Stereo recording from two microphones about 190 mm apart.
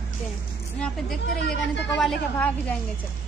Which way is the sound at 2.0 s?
5° left (ahead or behind).